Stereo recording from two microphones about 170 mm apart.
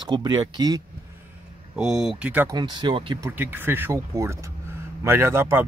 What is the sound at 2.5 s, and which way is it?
Speech, 25° right (ahead or behind).